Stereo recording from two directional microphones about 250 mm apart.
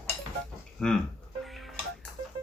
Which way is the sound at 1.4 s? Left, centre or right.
Centre.